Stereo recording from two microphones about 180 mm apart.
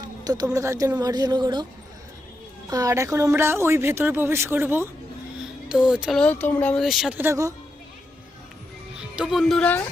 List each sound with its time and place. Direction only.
0.0 s speech: 20° right (ahead or behind)
2.6 s speech: 20° right (ahead or behind)
5.9 s speech: 5° right (ahead or behind)
9.0 s speech: 5° right (ahead or behind)